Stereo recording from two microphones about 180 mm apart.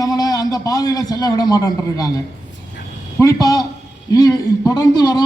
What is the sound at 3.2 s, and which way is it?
A man's voice, 20° left (ahead or behind).